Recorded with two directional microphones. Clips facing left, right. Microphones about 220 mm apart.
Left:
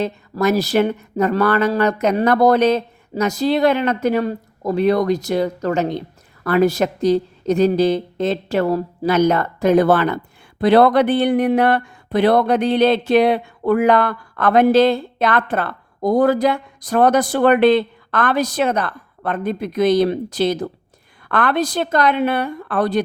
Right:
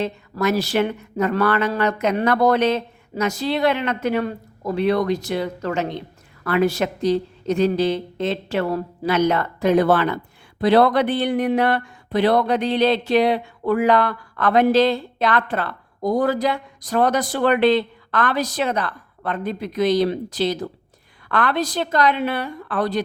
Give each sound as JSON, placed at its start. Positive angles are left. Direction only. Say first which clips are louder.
{"t": 0.0, "sound": "speech", "louder": "left 3 dB", "side_deg": 40}